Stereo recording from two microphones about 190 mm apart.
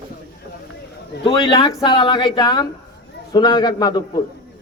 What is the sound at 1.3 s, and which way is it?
A man's voice, 25° left (ahead or behind).